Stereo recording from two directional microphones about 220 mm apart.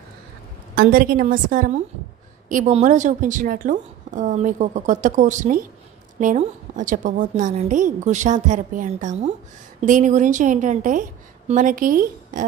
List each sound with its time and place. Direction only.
0.7 s a woman's voice: 40° right (ahead or behind)